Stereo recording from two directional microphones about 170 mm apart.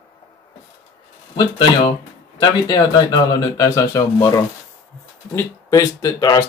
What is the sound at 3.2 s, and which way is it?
Speech, 20° left (ahead or behind).